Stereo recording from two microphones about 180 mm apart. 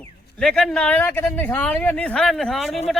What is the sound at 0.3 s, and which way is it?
A man's voice, 5° left (ahead or behind).